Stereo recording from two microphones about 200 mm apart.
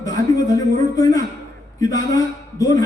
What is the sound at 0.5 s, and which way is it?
A man's voice, 15° left (ahead or behind).